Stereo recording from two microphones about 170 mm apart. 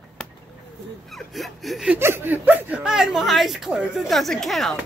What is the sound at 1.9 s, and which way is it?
Chuckle, 15° right (ahead or behind).